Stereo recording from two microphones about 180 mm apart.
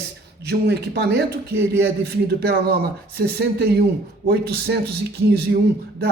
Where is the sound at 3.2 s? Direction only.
55° right (ahead or behind).